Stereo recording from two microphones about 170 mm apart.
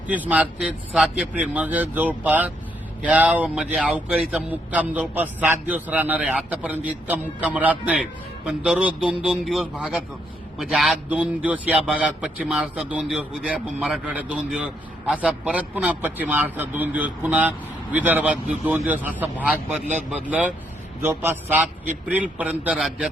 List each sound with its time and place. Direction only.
0.1 s a man's voice: 10° right (ahead or behind)
21.0 s a man's voice: 15° right (ahead or behind)